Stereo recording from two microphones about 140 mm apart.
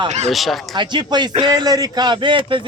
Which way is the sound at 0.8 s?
30° right (ahead or behind).